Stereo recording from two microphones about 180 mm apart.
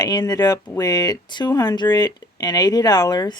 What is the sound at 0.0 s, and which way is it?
Speech, 20° left (ahead or behind).